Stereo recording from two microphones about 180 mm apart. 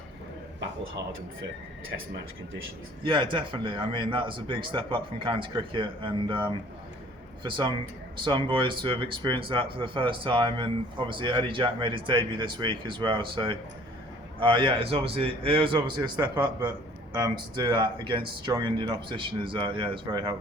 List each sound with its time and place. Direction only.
3.0 s a man's voice: 25° right (ahead or behind)